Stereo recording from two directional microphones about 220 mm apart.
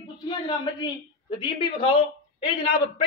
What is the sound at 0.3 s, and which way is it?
Speech, 20° left (ahead or behind).